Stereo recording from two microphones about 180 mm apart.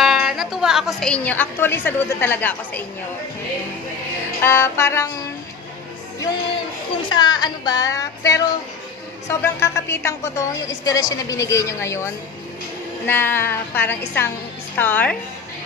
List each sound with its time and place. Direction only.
0.0 s a woman's voice: centre (ahead or behind)
4.4 s a woman's voice: 15° left (ahead or behind)
7.1 s music: 25° left (ahead or behind)
9.3 s a woman's voice: 15° left (ahead or behind)